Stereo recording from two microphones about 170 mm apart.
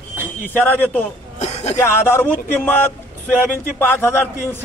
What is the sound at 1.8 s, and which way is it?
A man's voice, 15° left (ahead or behind).